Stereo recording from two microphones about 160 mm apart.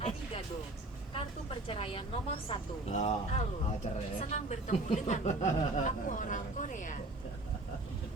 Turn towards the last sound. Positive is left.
turn(degrees=50)  # may be behind; listen again after turning